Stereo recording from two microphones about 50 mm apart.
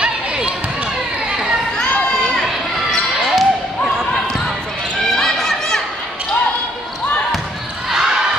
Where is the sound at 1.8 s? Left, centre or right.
Left.